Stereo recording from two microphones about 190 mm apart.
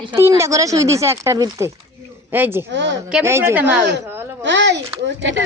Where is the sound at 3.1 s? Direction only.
15° right (ahead or behind).